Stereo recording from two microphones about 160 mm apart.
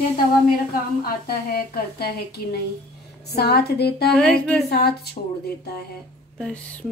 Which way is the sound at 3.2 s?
90° left.